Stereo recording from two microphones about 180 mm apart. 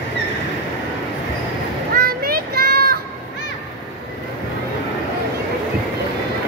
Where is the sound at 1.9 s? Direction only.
55° right (ahead or behind).